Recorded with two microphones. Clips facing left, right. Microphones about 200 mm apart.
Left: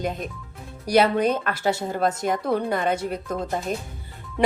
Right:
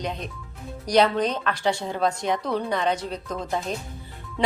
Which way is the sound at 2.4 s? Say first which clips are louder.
Left 3 dB; 55° left (ahead or behind).